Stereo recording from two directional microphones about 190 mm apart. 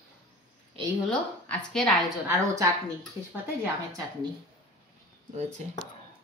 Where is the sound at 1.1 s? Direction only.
5° left (ahead or behind).